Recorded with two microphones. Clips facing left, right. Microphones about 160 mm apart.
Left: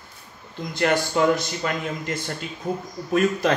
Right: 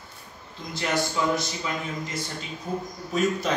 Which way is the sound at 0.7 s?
60° left (ahead or behind).